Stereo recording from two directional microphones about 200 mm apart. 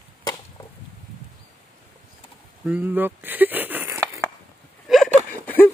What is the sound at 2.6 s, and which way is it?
Speech, 10° right (ahead or behind).